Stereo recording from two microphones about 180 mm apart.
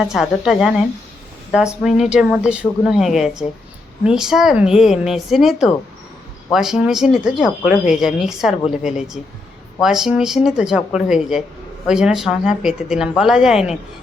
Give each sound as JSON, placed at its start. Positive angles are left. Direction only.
{"t": 0.0, "sound": "speech", "side_deg": 0}